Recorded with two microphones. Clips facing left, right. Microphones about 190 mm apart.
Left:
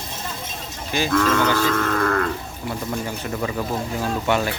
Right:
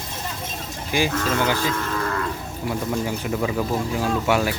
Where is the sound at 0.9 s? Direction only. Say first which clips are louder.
Right 2 dB; 10° right (ahead or behind).